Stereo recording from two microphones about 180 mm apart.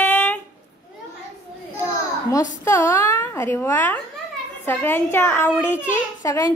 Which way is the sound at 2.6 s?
15° left (ahead or behind).